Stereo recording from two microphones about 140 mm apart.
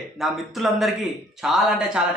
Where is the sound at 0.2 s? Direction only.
Centre (ahead or behind).